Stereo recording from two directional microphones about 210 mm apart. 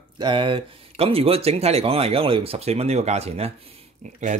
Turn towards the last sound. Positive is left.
turn(degrees=-30)  # may be behind; listen again after turning